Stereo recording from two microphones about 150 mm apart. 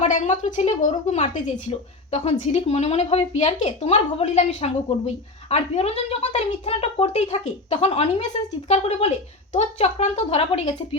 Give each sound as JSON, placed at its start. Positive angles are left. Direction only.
{"t": 0.0, "sound": "a woman's voice", "side_deg": 55}